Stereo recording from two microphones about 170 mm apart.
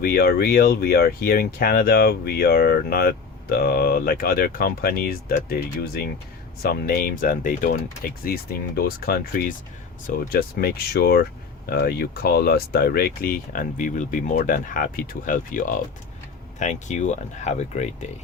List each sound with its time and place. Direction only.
0.0 s speech: 60° left (ahead or behind)
8.2 s speech: 60° left (ahead or behind); by 18.1 s 40° left (ahead or behind)